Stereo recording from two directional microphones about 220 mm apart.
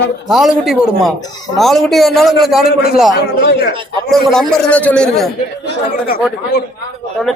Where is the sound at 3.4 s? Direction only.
50° left (ahead or behind).